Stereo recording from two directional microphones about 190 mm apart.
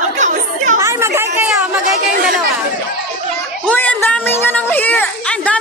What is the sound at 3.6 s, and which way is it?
Speech, 10° left (ahead or behind).